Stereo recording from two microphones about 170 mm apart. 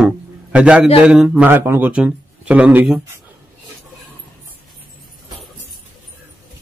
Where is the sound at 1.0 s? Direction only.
5° right (ahead or behind).